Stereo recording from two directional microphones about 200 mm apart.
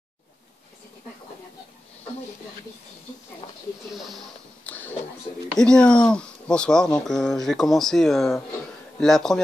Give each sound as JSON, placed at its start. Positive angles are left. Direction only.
{"t": 3.4, "sound": "snake", "side_deg": 25}
{"t": 3.9, "sound": "a sound", "side_deg": 0}
{"t": 5.5, "sound": "speech", "side_deg": 5}